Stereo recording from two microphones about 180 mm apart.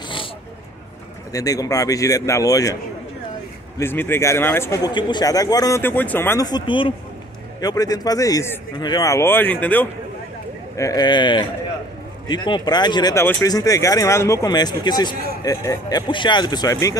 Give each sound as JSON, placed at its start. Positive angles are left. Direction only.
{"t": 1.3, "sound": "a man's voice", "side_deg": 20}
{"t": 10.8, "sound": "speech", "side_deg": 20}